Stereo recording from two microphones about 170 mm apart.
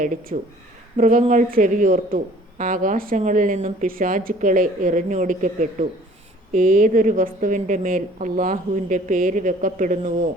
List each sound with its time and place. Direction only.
0.0 s a woman's voice: 50° right (ahead or behind)